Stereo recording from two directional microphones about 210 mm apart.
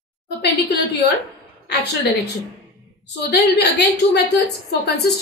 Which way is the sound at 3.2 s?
50° left (ahead or behind).